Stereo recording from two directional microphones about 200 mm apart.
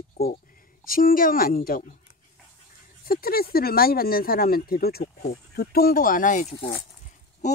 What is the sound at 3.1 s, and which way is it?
Speech, 50° left (ahead or behind).